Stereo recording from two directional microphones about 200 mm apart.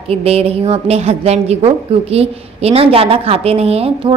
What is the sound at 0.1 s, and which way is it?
A woman's voice, 30° right (ahead or behind).